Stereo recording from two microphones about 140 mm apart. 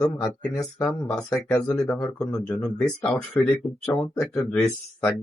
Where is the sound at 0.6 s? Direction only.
5° left (ahead or behind).